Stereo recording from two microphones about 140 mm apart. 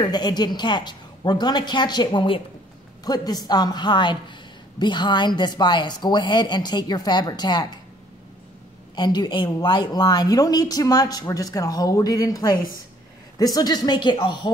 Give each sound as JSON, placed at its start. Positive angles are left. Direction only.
{"t": 0.0, "sound": "a woman's voice", "side_deg": 30}
{"t": 8.9, "sound": "speech", "side_deg": 30}